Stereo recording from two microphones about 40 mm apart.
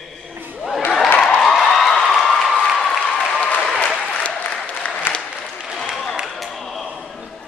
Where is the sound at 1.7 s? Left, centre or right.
Centre.